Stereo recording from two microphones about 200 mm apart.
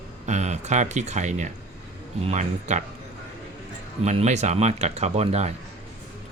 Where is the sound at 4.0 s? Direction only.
35° right (ahead or behind).